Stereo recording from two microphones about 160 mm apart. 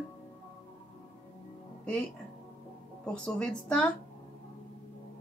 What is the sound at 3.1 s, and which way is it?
Speech, 5° left (ahead or behind).